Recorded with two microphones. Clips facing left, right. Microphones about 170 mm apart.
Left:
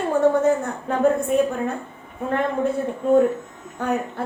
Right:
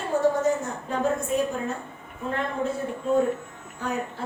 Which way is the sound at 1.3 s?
55° left (ahead or behind).